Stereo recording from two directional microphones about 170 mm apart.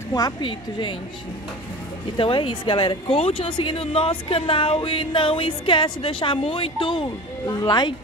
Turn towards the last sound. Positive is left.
turn(degrees=25)  # may be behind; listen again after turning